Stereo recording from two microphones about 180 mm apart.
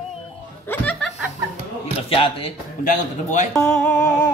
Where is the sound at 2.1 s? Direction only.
30° left (ahead or behind).